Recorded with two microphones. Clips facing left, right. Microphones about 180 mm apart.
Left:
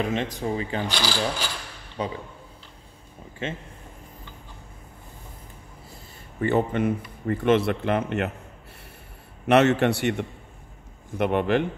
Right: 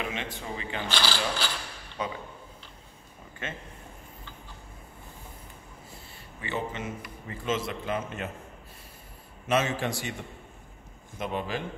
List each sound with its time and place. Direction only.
0.0 s speech: 40° left (ahead or behind)
0.8 s speech: 10° left (ahead or behind)
2.0 s speech: 30° left (ahead or behind)
6.4 s speech: 55° left (ahead or behind)
9.5 s speech: 70° left (ahead or behind)